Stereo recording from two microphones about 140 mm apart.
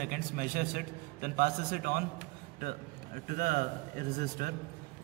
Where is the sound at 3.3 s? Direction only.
85° right.